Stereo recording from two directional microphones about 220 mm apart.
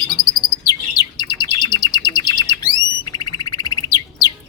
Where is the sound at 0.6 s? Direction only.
20° left (ahead or behind).